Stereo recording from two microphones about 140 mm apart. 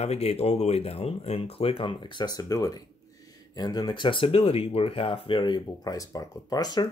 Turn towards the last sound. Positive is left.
turn(degrees=30)  # may be behind; listen again after turning